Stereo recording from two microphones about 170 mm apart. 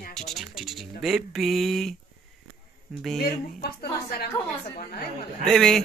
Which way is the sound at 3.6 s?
70° left (ahead or behind).